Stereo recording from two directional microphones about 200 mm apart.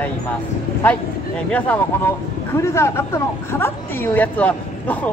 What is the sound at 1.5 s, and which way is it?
Speech, 10° left (ahead or behind).